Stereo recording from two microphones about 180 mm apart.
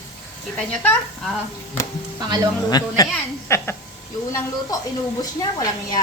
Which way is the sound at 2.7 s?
20° left (ahead or behind).